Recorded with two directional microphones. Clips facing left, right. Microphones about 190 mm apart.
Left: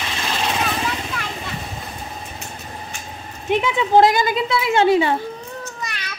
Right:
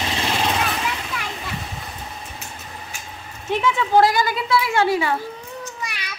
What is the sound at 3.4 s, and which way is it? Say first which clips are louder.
Speech: left 2 dB; 20° left (ahead or behind).